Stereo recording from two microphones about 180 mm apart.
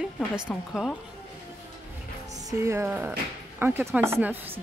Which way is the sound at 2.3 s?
15° right (ahead or behind).